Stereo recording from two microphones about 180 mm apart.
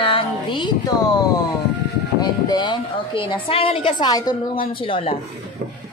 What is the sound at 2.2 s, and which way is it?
A woman's voice, 25° left (ahead or behind).